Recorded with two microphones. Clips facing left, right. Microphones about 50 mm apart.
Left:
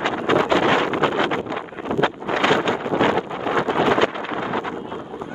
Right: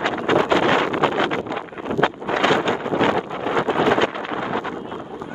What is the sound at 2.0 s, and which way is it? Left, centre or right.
Wind noise, left.